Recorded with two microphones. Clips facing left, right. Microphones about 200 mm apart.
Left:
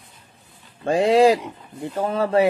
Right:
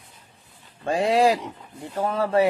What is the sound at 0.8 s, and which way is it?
Speech, 25° left (ahead or behind).